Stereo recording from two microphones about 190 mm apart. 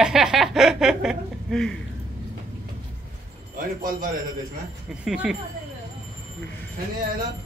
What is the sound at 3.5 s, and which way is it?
Speech, 45° right (ahead or behind).